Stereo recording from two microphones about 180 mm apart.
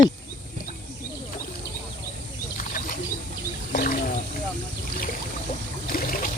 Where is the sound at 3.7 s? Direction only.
50° left (ahead or behind).